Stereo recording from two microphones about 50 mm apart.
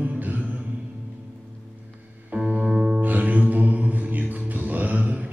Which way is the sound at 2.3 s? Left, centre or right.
Right.